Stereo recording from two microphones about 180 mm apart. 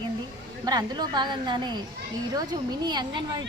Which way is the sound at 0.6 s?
20° right (ahead or behind).